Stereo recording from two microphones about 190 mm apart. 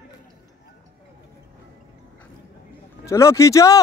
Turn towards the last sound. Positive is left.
turn(degrees=15)  # may be behind; listen again after turning